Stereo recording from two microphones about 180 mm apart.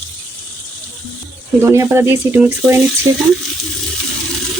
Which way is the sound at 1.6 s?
15° right (ahead or behind).